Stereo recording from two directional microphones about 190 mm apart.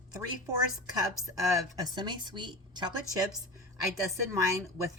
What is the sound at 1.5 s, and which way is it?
Speech, 20° right (ahead or behind).